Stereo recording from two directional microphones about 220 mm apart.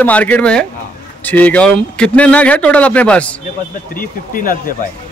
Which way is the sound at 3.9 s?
40° left (ahead or behind).